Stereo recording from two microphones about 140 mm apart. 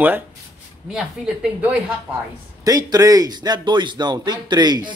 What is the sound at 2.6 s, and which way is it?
Speech, 25° right (ahead or behind).